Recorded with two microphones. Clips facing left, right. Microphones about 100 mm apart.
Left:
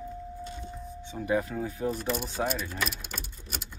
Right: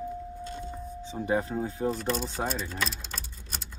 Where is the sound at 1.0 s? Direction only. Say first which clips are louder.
Even; 30° right (ahead or behind).